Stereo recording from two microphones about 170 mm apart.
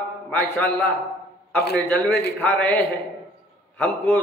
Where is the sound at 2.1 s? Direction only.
75° left (ahead or behind).